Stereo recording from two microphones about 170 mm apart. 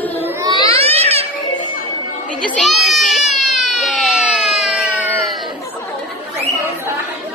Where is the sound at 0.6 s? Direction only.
35° right (ahead or behind).